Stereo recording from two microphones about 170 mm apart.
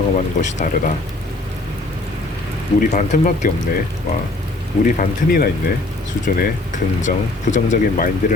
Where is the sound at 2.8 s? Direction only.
50° left (ahead or behind).